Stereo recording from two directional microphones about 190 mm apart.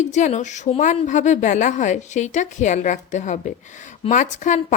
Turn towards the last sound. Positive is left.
turn(degrees=40)  # may be behind; listen again after turning